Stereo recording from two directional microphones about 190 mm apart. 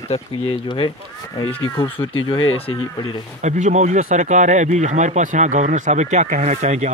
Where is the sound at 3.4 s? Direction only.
40° right (ahead or behind).